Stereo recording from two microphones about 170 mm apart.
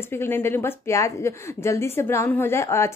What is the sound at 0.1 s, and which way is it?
Speech, 15° left (ahead or behind).